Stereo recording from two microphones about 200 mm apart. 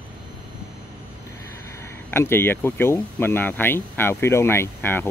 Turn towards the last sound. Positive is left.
turn(degrees=10)  # may be behind; listen again after turning